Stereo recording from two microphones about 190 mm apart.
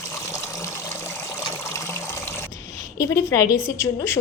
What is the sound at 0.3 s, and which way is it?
Water, 15° left (ahead or behind).